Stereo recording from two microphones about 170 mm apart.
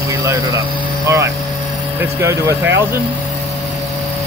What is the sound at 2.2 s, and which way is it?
Speech, 15° right (ahead or behind).